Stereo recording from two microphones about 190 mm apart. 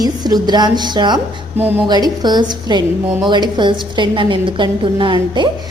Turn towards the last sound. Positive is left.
turn(degrees=-25)  # may be behind; listen again after turning